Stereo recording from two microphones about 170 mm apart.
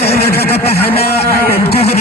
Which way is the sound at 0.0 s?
70° left (ahead or behind).